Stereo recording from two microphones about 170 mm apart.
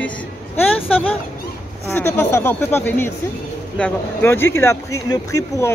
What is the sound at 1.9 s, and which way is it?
Speech, 15° left (ahead or behind).